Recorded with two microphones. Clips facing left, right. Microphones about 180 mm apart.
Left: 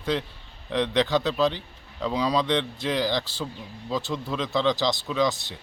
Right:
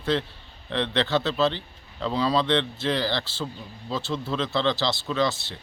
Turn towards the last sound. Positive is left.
turn(degrees=15)  # may be behind; listen again after turning